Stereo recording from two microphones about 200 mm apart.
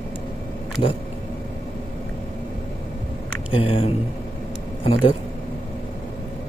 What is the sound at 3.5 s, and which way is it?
Speech, 30° left (ahead or behind).